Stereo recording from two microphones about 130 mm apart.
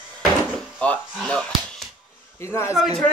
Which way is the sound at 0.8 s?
10° left (ahead or behind).